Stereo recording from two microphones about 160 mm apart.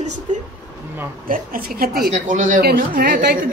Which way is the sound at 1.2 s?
65° right (ahead or behind).